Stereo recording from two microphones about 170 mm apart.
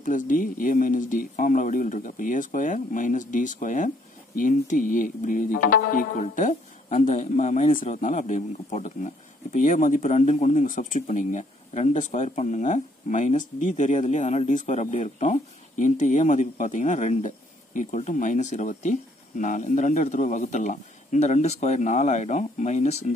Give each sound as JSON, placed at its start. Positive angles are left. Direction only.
{"t": 0.0, "sound": "speech", "side_deg": 50}